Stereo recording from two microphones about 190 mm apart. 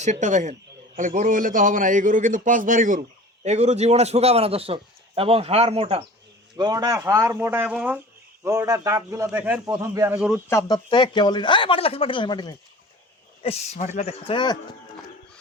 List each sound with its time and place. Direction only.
0.0 s a man's voice: 40° right (ahead or behind)
6.6 s speech: 20° right (ahead or behind)
10.2 s speech: 5° right (ahead or behind)
10.5 s a man's voice: 25° left (ahead or behind)
13.4 s speech: 35° left (ahead or behind)